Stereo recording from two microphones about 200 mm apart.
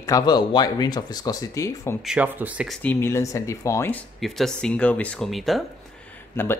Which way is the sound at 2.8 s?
10° left (ahead or behind).